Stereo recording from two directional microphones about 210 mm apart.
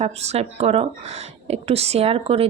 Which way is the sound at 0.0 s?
30° right (ahead or behind).